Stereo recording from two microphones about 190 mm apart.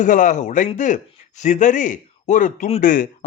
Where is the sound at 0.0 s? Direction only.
40° left (ahead or behind).